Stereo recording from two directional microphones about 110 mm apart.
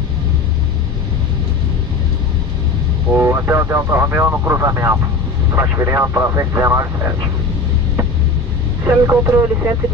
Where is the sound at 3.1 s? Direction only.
20° right (ahead or behind).